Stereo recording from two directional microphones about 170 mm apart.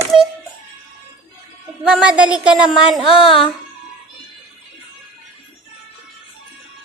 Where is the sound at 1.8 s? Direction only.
5° right (ahead or behind).